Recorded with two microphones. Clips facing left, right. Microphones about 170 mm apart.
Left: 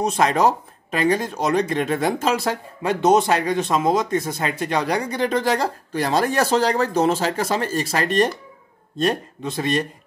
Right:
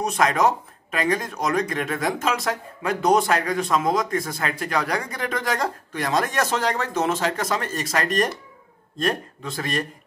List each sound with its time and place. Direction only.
0.0 s speech: 30° left (ahead or behind)